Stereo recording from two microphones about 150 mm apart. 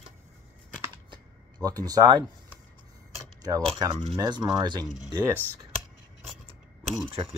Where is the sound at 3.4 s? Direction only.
25° right (ahead or behind).